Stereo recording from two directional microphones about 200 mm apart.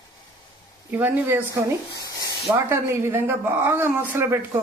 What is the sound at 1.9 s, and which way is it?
Rub, 20° left (ahead or behind).